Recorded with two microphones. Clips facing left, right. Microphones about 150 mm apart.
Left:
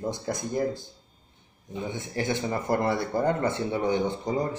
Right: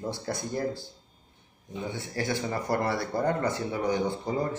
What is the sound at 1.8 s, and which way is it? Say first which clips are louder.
Speech: left 2 dB; 20° left (ahead or behind).